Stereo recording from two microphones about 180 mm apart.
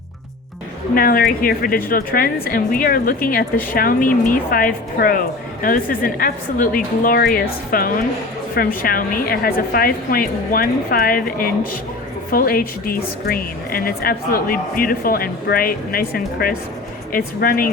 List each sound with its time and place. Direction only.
0.9 s a woman's voice: 55° left (ahead or behind)